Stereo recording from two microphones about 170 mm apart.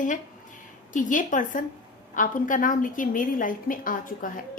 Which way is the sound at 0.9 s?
50° left (ahead or behind).